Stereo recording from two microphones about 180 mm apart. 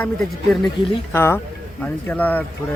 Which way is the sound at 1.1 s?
15° left (ahead or behind).